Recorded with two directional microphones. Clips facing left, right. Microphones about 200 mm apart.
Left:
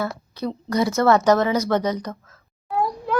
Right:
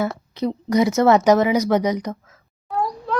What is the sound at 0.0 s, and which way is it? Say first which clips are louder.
Speech: right 4 dB; 20° right (ahead or behind).